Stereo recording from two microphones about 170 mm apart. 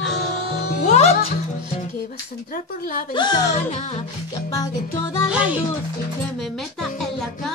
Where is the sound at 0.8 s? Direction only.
40° left (ahead or behind).